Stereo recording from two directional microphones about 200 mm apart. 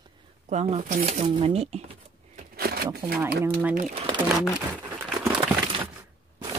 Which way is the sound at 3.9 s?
25° right (ahead or behind).